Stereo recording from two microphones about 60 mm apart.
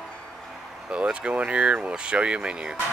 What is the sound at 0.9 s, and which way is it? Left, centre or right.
Speech, centre.